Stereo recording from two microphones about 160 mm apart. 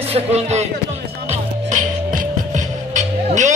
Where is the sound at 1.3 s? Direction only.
50° right (ahead or behind).